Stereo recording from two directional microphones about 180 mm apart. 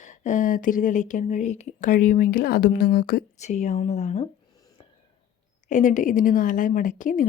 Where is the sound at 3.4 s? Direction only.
40° left (ahead or behind).